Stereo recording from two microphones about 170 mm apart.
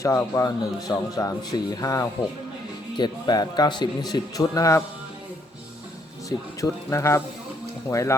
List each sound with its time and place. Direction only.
0.0 s speech: 20° left (ahead or behind)
6.2 s speech: 20° left (ahead or behind)